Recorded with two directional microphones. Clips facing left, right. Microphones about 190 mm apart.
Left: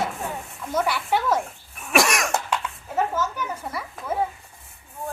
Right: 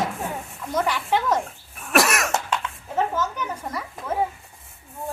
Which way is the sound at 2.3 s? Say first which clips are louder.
Even; 10° left (ahead or behind).